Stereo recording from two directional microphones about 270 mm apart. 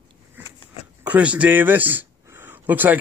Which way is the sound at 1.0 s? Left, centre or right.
Centre.